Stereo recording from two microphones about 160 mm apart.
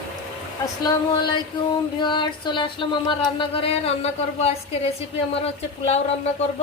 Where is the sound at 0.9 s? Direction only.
25° left (ahead or behind).